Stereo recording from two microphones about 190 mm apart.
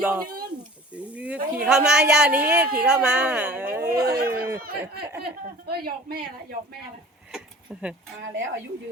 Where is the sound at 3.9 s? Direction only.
55° right (ahead or behind).